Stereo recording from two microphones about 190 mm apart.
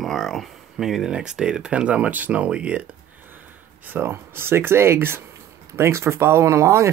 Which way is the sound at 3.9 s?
10° right (ahead or behind).